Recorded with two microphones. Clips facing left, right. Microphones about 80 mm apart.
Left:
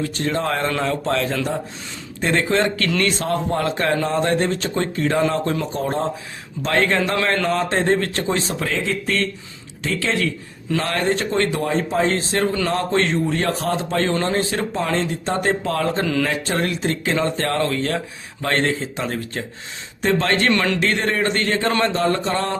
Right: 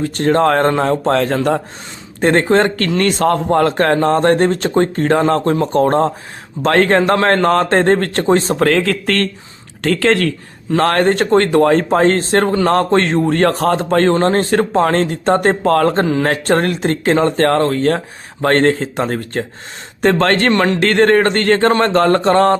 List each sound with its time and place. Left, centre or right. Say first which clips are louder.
0.0 s speech: right 9 dB; right
5.7 s speech: right 9 dB; right
8.7 s speech: right 7 dB; right
20.0 s speech: right 6 dB; right
20.5 s speech: right 5 dB; right
20.8 s speech: right 9 dB; right